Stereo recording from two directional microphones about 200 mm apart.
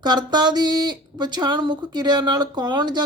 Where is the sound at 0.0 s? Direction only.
20° right (ahead or behind).